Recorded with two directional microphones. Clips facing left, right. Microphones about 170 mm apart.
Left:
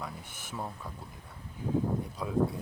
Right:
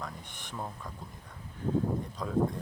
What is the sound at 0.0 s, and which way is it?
Speech, 5° left (ahead or behind).